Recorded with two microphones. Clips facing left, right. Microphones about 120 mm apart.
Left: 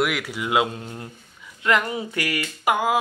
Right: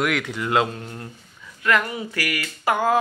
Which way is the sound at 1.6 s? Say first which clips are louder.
Even; 20° left (ahead or behind).